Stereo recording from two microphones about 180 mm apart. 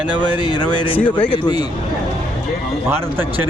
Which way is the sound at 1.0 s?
10° left (ahead or behind).